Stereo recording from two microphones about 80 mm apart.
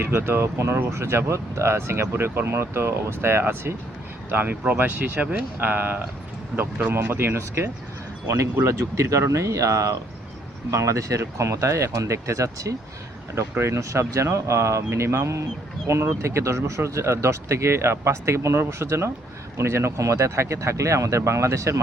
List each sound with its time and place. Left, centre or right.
0.0 s speech: right
9.0 s speech: right